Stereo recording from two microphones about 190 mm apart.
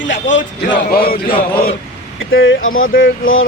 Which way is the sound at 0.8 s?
50° left (ahead or behind).